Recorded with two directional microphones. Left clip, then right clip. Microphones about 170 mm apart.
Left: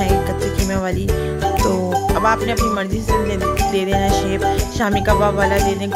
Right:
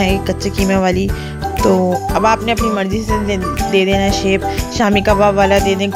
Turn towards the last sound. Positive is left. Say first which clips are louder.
# right 4 dB
turn(degrees=-35)  # may be behind; listen again after turning